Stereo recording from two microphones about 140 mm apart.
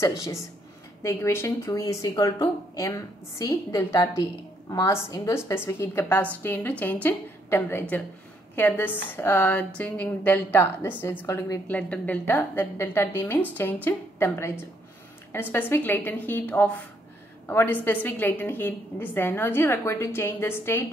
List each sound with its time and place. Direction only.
0.0 s a woman's voice: 20° left (ahead or behind)
11.6 s speech: 10° left (ahead or behind)